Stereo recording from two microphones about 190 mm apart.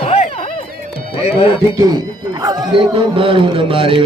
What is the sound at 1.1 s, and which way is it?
Speech, 30° left (ahead or behind).